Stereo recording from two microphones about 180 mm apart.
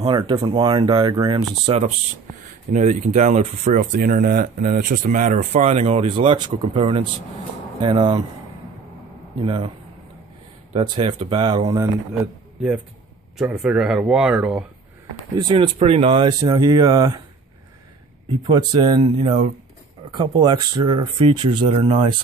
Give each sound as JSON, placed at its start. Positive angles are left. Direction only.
{"t": 0.0, "sound": "speech", "side_deg": -30}
{"t": 2.4, "sound": "speech", "side_deg": -45}
{"t": 9.4, "sound": "speech", "side_deg": -30}
{"t": 10.7, "sound": "speech", "side_deg": -35}
{"t": 13.4, "sound": "speech", "side_deg": -5}
{"t": 15.3, "sound": "speech", "side_deg": -30}
{"t": 18.5, "sound": "speech", "side_deg": -25}